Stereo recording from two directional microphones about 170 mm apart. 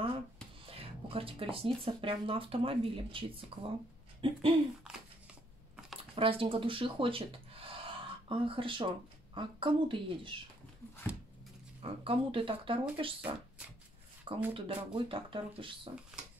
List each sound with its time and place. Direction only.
0.7 s speech: 35° right (ahead or behind)
6.1 s speech: 30° right (ahead or behind)
11.8 s speech: 30° right (ahead or behind)
14.5 s speech: 30° right (ahead or behind)
16.1 s pig: 5° right (ahead or behind)